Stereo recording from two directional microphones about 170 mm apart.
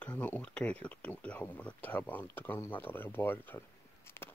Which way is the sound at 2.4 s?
10° left (ahead or behind).